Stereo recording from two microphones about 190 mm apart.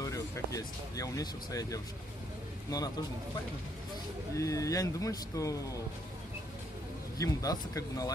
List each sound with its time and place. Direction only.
0.0 s speech: 20° left (ahead or behind)
4.4 s speech: 15° left (ahead or behind)
7.2 s speech: 20° left (ahead or behind)